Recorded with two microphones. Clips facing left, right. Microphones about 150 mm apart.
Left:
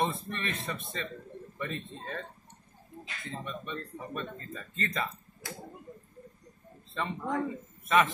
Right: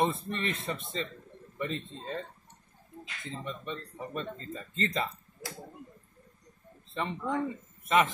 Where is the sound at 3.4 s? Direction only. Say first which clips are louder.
Right 1 dB; 25° right (ahead or behind).